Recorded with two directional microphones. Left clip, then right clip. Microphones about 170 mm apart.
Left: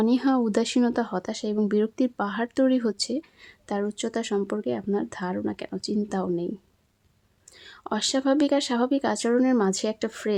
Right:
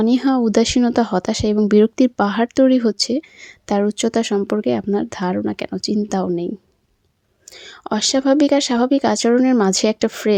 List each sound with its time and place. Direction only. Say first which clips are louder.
0.0 s speech: right 6 dB; 35° right (ahead or behind)
7.5 s speech: right 7 dB; 40° right (ahead or behind)